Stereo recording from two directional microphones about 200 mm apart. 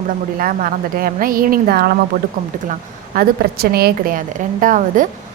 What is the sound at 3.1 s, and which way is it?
A woman's voice, 50° right (ahead or behind).